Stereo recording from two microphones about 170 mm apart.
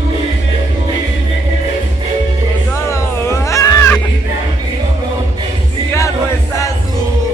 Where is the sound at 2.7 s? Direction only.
15° left (ahead or behind).